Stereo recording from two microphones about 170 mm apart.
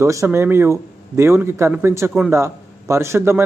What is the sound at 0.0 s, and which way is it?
A man's voice, 15° right (ahead or behind).